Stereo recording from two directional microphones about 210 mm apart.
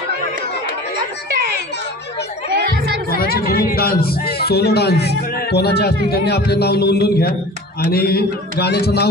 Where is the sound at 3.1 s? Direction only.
45° left (ahead or behind).